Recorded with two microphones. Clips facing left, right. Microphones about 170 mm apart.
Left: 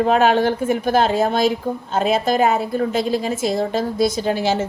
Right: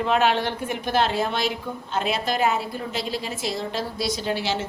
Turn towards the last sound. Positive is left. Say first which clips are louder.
# left 6 dB
turn(degrees=45)  # may be behind; listen again after turning